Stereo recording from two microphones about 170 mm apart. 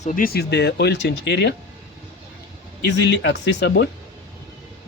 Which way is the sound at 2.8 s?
90° left.